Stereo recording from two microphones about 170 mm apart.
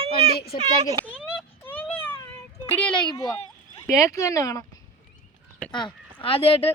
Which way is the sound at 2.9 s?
25° left (ahead or behind).